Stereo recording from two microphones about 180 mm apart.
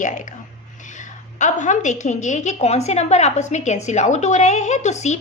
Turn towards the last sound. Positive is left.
turn(degrees=40)  # may be behind; listen again after turning